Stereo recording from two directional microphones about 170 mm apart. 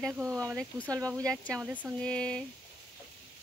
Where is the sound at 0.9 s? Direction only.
20° right (ahead or behind).